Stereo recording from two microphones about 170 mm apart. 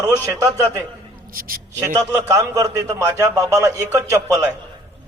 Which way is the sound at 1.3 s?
55° right (ahead or behind).